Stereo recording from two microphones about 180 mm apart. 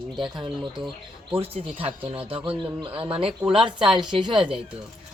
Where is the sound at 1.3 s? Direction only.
35° right (ahead or behind).